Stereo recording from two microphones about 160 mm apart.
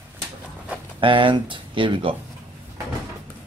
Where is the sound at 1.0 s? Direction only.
30° right (ahead or behind).